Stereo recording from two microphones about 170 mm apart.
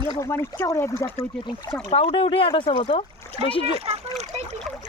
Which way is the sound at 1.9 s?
35° left (ahead or behind).